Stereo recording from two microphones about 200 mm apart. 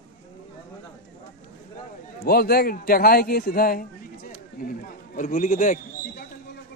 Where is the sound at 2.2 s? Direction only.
50° left (ahead or behind).